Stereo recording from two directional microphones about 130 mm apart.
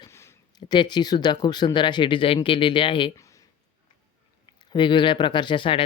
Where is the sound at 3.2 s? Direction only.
25° left (ahead or behind).